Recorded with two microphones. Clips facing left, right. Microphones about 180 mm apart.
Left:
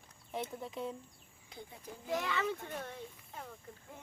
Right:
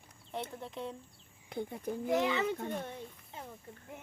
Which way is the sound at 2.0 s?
20° right (ahead or behind).